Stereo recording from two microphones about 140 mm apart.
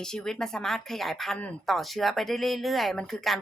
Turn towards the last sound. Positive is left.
turn(degrees=0)  # may be behind; listen again after turning